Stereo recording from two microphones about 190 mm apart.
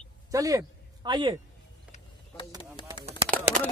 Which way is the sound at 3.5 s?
45° right (ahead or behind).